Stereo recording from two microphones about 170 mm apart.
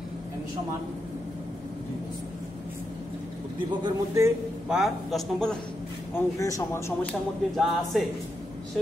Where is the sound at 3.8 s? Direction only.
20° right (ahead or behind).